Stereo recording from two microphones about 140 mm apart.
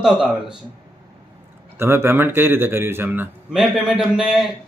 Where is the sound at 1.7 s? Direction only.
15° right (ahead or behind).